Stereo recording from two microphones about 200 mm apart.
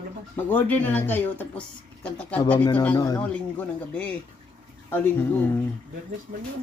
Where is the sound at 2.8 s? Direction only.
15° left (ahead or behind).